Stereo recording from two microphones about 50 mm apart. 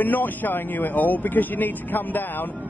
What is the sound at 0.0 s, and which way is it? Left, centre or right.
Speech, left.